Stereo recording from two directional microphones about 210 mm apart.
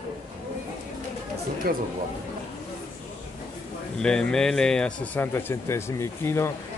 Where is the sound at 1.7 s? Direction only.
45° right (ahead or behind).